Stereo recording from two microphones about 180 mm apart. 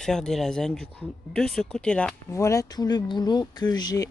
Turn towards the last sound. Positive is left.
turn(degrees=20)  # may be behind; listen again after turning